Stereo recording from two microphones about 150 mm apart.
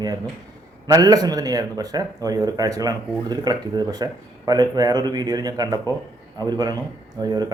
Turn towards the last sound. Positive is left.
turn(degrees=-25)  # may be behind; listen again after turning